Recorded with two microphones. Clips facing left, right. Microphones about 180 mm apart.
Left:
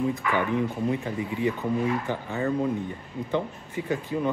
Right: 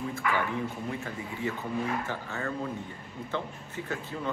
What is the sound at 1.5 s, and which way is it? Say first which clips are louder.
Speech: left 5 dB; 15° left (ahead or behind).